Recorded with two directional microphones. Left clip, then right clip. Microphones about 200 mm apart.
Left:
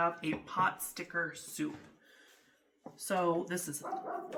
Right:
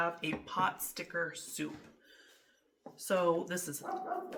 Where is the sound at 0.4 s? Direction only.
20° right (ahead or behind).